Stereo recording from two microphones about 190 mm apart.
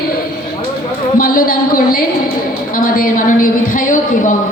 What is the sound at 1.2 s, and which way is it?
A woman's voice, 50° left (ahead or behind).